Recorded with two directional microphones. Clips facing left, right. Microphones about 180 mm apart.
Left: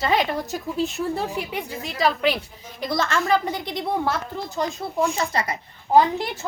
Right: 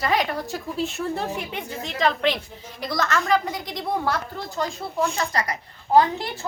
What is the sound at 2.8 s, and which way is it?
A woman's voice, 25° left (ahead or behind).